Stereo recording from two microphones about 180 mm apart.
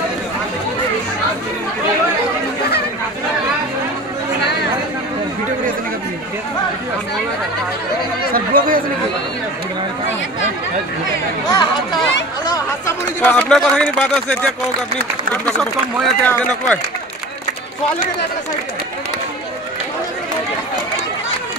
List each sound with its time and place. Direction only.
8.3 s speech: 50° right (ahead or behind)
11.5 s a man's voice: 25° left (ahead or behind); by 14.5 s 5° left (ahead or behind)
16.0 s a man's voice: 5° left (ahead or behind)